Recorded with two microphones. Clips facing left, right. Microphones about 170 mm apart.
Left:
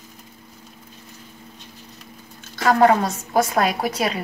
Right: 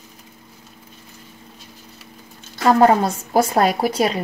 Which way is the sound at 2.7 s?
30° right (ahead or behind).